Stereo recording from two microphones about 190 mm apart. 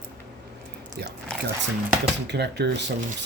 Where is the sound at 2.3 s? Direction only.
60° right (ahead or behind).